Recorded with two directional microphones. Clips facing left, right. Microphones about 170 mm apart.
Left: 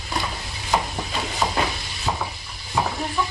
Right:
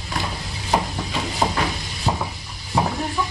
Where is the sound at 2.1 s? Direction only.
30° right (ahead or behind).